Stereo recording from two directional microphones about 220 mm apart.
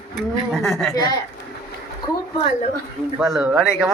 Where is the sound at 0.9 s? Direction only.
15° left (ahead or behind).